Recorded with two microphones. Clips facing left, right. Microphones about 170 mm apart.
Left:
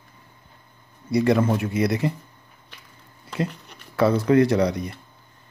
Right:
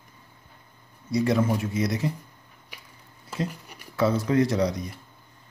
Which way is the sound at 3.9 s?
60° left (ahead or behind).